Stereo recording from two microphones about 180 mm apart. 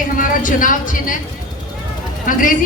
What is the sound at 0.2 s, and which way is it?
Speech, 50° left (ahead or behind).